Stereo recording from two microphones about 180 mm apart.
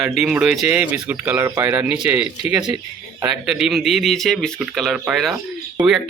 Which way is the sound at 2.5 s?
20° right (ahead or behind).